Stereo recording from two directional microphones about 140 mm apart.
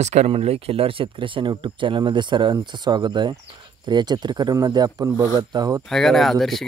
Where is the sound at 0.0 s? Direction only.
55° right (ahead or behind); by 5.8 s 30° right (ahead or behind).